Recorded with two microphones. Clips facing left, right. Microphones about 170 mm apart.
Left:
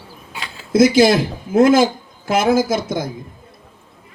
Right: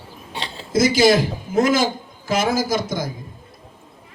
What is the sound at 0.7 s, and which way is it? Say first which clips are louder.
A woman's voice: left 3 dB; 55° left (ahead or behind).